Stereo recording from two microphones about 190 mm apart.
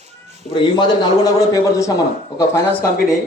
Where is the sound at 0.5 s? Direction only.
25° left (ahead or behind).